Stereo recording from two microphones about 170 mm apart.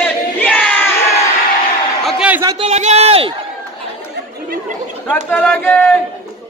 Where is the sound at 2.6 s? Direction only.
40° right (ahead or behind).